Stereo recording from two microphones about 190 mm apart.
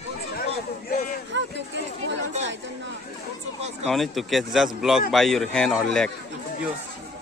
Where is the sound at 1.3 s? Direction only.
70° right (ahead or behind).